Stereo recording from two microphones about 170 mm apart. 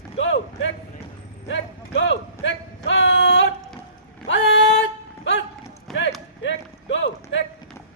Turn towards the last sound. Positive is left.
turn(degrees=90)